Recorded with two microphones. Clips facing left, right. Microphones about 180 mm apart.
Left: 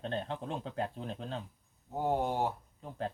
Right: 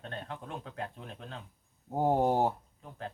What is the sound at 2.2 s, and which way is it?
Speech, 40° right (ahead or behind).